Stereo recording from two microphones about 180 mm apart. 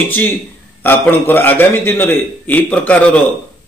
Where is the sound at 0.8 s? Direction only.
10° left (ahead or behind).